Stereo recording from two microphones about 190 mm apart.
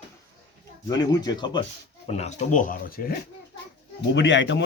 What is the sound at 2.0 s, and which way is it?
Speech, 35° left (ahead or behind).